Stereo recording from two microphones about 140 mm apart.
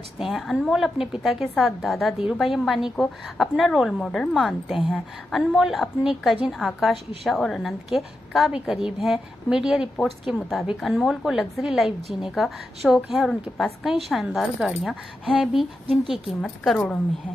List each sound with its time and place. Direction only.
0.2 s a woman's voice: centre (ahead or behind)